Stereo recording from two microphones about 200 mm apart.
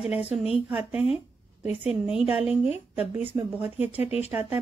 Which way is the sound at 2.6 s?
30° left (ahead or behind).